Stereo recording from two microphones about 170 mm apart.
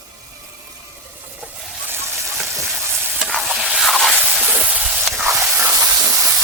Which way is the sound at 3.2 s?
Centre (ahead or behind).